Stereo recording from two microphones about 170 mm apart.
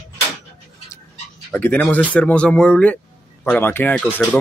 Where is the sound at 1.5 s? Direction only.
10° left (ahead or behind).